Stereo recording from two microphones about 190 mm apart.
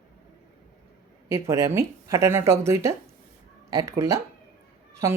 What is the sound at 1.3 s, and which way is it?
Speech, 15° right (ahead or behind).